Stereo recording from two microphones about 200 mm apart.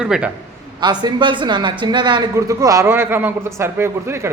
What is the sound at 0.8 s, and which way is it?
Speech, 20° right (ahead or behind).